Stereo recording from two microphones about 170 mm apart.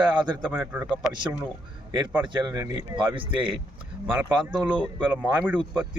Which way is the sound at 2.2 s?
25° right (ahead or behind).